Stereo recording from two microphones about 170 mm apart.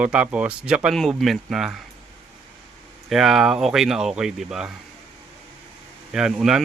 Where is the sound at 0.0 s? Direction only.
5° right (ahead or behind).